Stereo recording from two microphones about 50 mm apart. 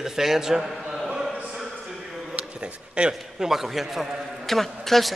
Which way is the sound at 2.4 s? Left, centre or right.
Right.